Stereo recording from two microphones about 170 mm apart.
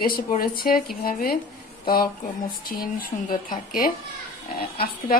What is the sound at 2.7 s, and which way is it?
A woman's voice, 55° left (ahead or behind).